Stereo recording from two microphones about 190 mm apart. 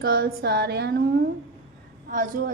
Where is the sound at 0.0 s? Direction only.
55° right (ahead or behind).